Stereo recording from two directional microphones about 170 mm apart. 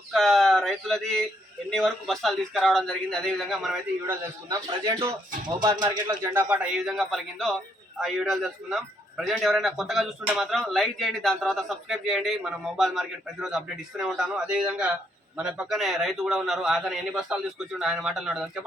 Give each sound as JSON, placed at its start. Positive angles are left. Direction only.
{"t": 0.1, "sound": "speech", "side_deg": 0}
{"t": 4.0, "sound": "a man's voice", "side_deg": -15}
{"t": 6.3, "sound": "speech", "side_deg": -5}